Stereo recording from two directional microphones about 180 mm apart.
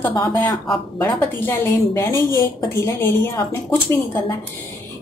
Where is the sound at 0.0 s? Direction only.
15° left (ahead or behind).